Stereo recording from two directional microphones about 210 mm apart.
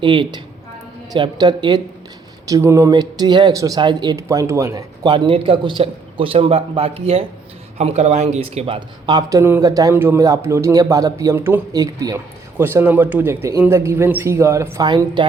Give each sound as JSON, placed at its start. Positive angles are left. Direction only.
{"t": 0.0, "sound": "speech", "side_deg": -25}